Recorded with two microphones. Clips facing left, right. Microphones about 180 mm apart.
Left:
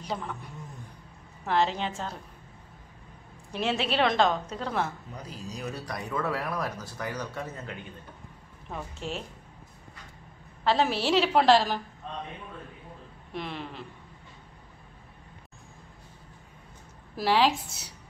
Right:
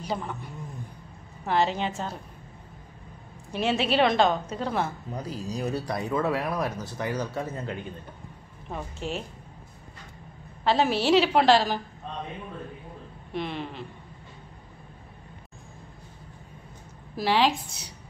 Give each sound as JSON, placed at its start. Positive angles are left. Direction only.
{"t": 0.0, "sound": "a woman's voice", "side_deg": -5}
{"t": 3.5, "sound": "a woman's voice", "side_deg": 0}
{"t": 5.1, "sound": "speech", "side_deg": -35}
{"t": 9.0, "sound": "a woman's voice", "side_deg": 0}
{"t": 10.6, "sound": "a woman's voice", "side_deg": 0}
{"t": 13.3, "sound": "a woman's voice", "side_deg": 0}
{"t": 17.2, "sound": "a woman's voice", "side_deg": 0}